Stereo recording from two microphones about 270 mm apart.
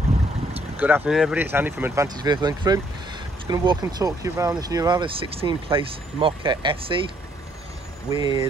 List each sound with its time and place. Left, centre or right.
0.7 s speech: centre
8.1 s speech: centre